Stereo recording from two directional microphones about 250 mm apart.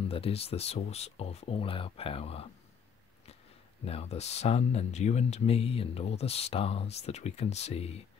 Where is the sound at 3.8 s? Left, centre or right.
Left.